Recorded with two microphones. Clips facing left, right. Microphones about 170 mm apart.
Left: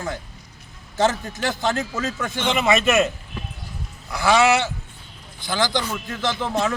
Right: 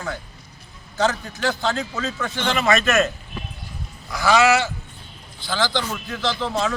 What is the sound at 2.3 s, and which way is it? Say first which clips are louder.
Speech: even; 15° left (ahead or behind).